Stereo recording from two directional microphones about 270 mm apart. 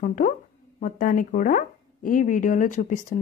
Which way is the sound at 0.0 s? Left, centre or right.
Left.